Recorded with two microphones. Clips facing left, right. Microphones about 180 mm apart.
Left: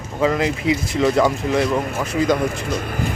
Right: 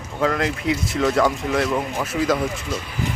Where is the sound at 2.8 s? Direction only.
50° left (ahead or behind).